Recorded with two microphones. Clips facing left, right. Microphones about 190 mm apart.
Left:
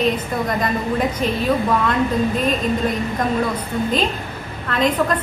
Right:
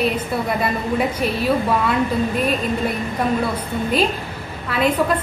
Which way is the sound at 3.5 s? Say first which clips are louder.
Even; 10° right (ahead or behind).